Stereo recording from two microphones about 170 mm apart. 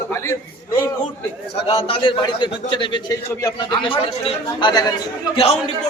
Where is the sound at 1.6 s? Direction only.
35° left (ahead or behind).